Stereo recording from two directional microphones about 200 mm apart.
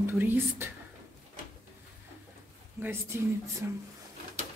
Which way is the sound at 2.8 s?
10° right (ahead or behind).